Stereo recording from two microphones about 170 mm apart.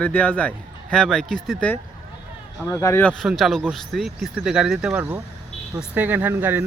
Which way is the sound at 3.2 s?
Centre (ahead or behind).